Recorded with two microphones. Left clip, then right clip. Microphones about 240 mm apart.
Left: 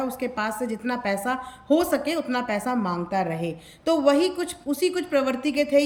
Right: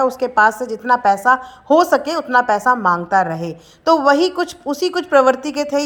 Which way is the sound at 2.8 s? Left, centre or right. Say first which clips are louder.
Right 11 dB; right.